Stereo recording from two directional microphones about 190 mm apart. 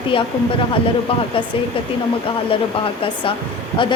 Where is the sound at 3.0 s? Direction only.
30° left (ahead or behind).